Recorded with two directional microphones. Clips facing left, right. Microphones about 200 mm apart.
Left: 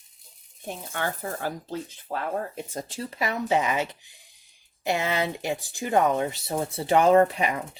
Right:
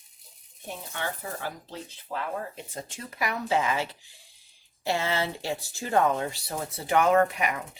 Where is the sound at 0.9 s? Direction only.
50° left (ahead or behind).